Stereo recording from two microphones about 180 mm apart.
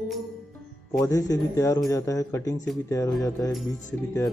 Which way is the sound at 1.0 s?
20° left (ahead or behind).